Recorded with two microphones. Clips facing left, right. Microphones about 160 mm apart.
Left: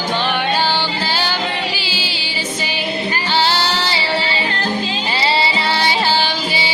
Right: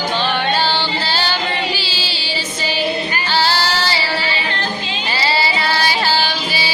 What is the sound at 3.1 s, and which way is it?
Singing, 20° left (ahead or behind).